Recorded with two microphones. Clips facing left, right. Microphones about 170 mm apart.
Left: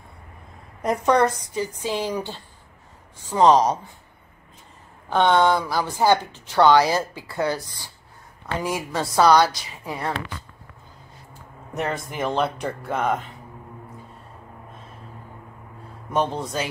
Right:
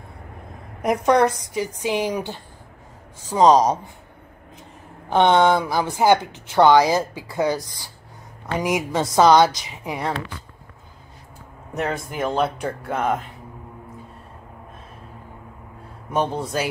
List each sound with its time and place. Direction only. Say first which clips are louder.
0.8 s a woman's voice: right 2 dB; 15° right (ahead or behind)
5.1 s a woman's voice: right 2 dB; 20° right (ahead or behind)
11.7 s speech: right 2 dB; 5° right (ahead or behind)
16.1 s a woman's voice: right 1 dB; 5° right (ahead or behind)